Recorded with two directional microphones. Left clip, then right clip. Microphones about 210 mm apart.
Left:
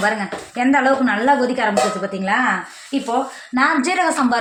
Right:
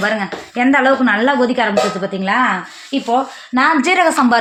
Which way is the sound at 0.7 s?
50° right (ahead or behind).